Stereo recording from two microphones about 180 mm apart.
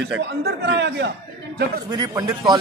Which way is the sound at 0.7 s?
70° right (ahead or behind).